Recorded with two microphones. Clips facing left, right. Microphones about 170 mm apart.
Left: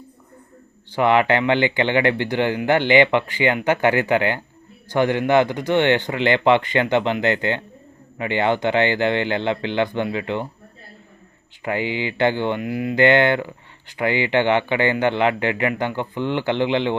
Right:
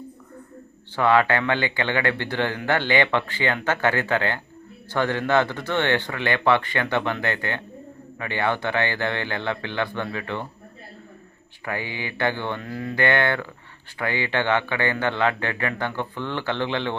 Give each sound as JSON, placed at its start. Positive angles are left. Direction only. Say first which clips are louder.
{"t": 0.9, "sound": "a man's voice", "louder": "left 2 dB", "side_deg": 20}
{"t": 11.6, "sound": "a man's voice", "louder": "left 7 dB", "side_deg": 20}